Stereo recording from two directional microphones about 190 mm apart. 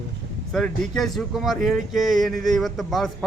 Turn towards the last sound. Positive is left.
turn(degrees=0)  # may be behind; listen again after turning